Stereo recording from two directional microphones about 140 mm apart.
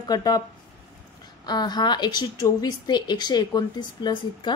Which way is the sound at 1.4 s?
30° left (ahead or behind).